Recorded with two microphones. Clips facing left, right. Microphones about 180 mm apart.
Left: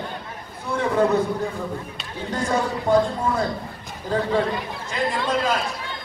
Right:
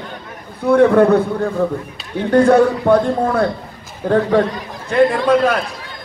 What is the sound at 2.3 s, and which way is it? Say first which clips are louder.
A man's voice: right 13 dB; 60° right (ahead or behind).